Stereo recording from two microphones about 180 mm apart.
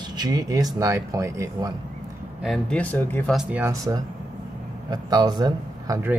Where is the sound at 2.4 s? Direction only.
5° left (ahead or behind).